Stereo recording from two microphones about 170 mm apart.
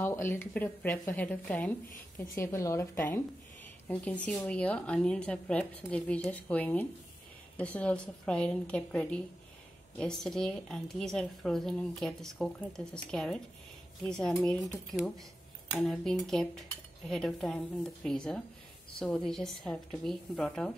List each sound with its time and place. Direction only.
0.0 s a woman's voice: 15° left (ahead or behind)